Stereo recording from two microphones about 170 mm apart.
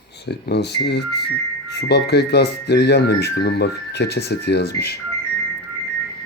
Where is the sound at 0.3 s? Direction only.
80° left.